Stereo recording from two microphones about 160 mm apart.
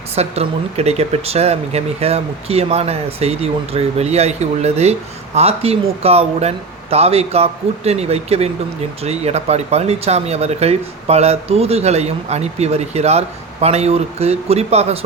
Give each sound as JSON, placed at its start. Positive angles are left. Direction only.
{"t": 0.2, "sound": "speech", "side_deg": -40}